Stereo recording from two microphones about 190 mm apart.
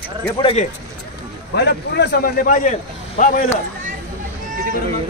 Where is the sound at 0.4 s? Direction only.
30° left (ahead or behind).